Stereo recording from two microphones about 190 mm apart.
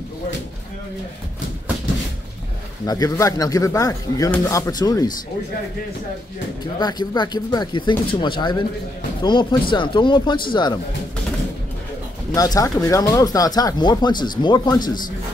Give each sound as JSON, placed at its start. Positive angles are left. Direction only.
{"t": 2.9, "sound": "speech", "side_deg": 20}
{"t": 6.8, "sound": "speech", "side_deg": 20}
{"t": 12.4, "sound": "speech", "side_deg": 20}